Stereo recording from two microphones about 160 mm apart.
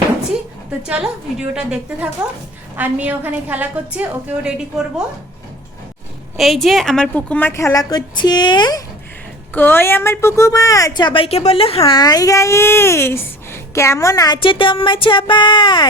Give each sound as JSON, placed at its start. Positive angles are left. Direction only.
{"t": 0.9, "sound": "a woman's voice", "side_deg": -5}
{"t": 6.3, "sound": "a woman's voice", "side_deg": 0}
{"t": 9.6, "sound": "a woman's voice", "side_deg": 10}
{"t": 14.3, "sound": "speech", "side_deg": 35}